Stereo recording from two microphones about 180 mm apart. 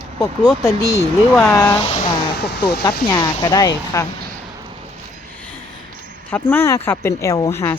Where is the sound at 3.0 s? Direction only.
20° left (ahead or behind).